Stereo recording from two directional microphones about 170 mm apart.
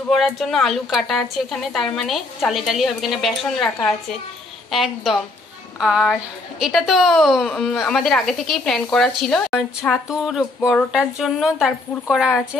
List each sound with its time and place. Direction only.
0.1 s a woman's voice: centre (ahead or behind)
10.7 s a sound: 5° left (ahead or behind)
11.0 s a woman's voice: centre (ahead or behind)